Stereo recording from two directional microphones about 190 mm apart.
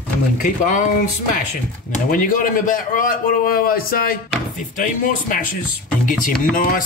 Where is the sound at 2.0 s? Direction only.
45° left (ahead or behind).